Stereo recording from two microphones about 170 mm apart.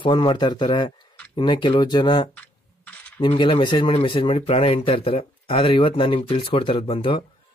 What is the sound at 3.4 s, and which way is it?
Speech, 30° left (ahead or behind).